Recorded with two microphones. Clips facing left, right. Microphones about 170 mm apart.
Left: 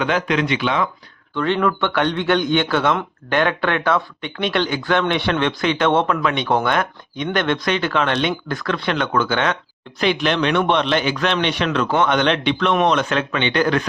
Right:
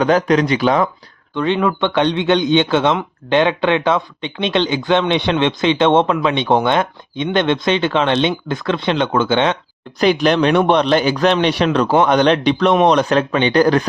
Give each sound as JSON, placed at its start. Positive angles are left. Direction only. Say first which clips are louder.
{"t": 0.0, "sound": "a man's voice", "louder": "right 6 dB", "side_deg": -40}
{"t": 1.4, "sound": "a man's voice", "louder": "right 2 dB", "side_deg": -15}
{"t": 10.0, "sound": "a man's voice", "louder": "right 5 dB", "side_deg": -40}